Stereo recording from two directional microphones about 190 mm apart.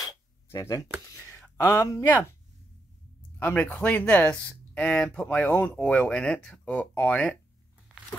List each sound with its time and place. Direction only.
0.5 s speech: 15° left (ahead or behind)
3.3 s speech: 10° left (ahead or behind)